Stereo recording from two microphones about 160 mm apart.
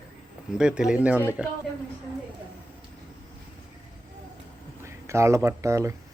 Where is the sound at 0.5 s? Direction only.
5° right (ahead or behind).